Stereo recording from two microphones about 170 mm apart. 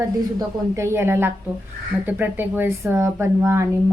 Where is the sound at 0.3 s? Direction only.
15° right (ahead or behind).